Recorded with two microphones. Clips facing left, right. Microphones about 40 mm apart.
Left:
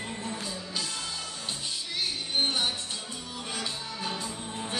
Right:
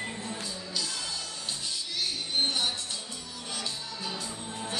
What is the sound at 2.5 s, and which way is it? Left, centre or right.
Music, centre.